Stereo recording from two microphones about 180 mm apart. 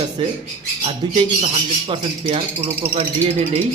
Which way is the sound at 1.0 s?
25° right (ahead or behind).